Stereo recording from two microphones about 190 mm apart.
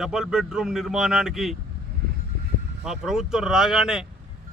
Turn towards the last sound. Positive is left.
turn(degrees=0)  # may be behind; listen again after turning